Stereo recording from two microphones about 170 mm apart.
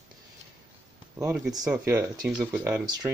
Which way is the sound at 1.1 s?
15° right (ahead or behind).